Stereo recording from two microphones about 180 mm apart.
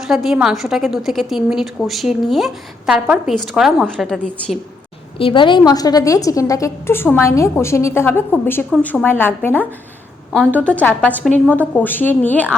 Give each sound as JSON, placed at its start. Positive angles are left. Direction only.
{"t": 0.0, "sound": "a woman's voice", "side_deg": 0}
{"t": 5.1, "sound": "a woman's voice", "side_deg": 30}